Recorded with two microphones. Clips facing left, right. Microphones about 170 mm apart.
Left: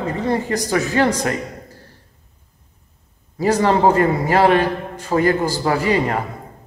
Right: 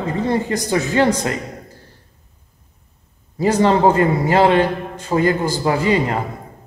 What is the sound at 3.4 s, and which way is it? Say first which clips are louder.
A man's voice: right 1 dB; 25° right (ahead or behind).